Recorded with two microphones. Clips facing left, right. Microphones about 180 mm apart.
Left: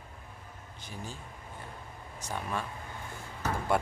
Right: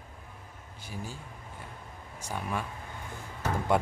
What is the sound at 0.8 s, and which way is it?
Speech, 10° right (ahead or behind).